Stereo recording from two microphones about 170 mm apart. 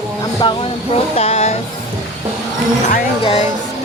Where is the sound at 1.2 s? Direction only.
35° left (ahead or behind).